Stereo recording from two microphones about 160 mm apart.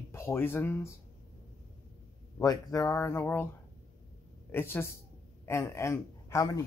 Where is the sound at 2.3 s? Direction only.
20° left (ahead or behind).